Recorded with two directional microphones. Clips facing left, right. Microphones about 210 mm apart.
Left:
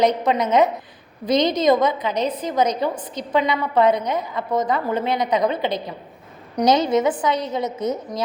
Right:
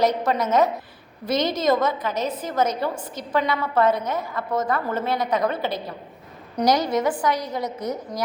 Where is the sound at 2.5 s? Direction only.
15° left (ahead or behind).